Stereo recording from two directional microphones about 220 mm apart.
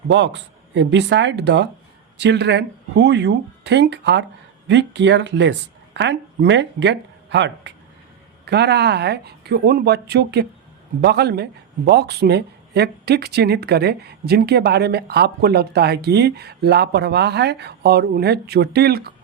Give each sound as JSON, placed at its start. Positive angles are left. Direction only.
{"t": 0.1, "sound": "speech", "side_deg": -55}